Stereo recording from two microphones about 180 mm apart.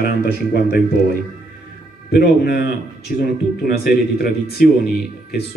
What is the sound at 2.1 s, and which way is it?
Speech, 60° left (ahead or behind).